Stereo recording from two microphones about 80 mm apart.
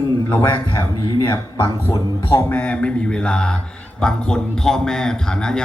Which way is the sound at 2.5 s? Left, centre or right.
Centre.